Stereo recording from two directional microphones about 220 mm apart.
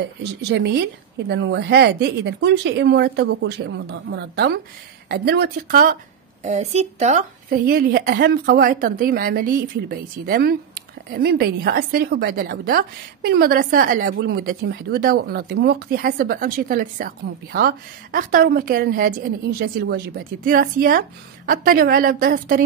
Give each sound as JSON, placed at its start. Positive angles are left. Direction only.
{"t": 0.4, "sound": "a woman's voice", "side_deg": -50}